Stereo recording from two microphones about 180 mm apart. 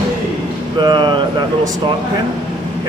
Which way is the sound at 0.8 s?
25° right (ahead or behind).